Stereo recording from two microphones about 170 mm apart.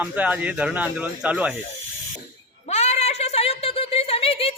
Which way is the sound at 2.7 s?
40° left (ahead or behind).